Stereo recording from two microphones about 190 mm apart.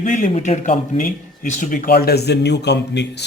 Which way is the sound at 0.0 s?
45° left (ahead or behind).